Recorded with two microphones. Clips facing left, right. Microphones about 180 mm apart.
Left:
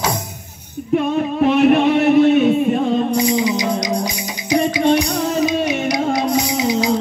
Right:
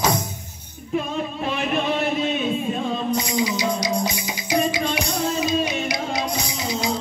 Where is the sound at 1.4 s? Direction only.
65° left (ahead or behind).